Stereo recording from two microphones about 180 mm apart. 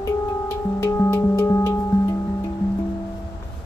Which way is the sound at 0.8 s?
15° left (ahead or behind).